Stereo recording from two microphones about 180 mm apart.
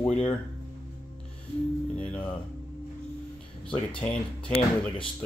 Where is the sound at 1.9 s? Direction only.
10° left (ahead or behind).